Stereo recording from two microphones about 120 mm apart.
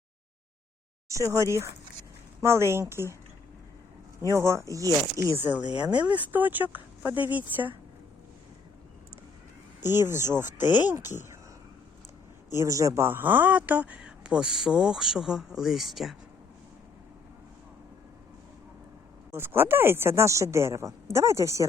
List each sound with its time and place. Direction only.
1.0 s a woman's voice: 25° right (ahead or behind)
4.3 s a woman's voice: 25° right (ahead or behind)
5.9 s speech: 10° right (ahead or behind)
9.8 s a woman's voice: 20° right (ahead or behind)
12.5 s speech: 25° right (ahead or behind); by 16.1 s centre (ahead or behind)
19.3 s a woman's voice: 20° right (ahead or behind)